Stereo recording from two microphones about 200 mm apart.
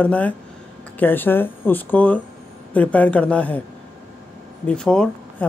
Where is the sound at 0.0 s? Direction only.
5° left (ahead or behind).